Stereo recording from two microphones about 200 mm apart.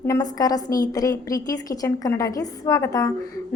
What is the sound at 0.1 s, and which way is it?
A woman's voice, 20° left (ahead or behind).